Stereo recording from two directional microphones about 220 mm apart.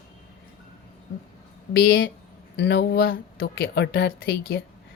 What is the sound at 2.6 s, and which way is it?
Speech, 50° left (ahead or behind).